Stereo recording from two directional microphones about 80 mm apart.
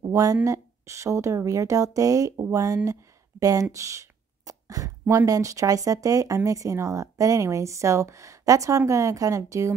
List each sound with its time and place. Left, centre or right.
0.1 s speech: right
3.7 s a sound: right
5.0 s speech: right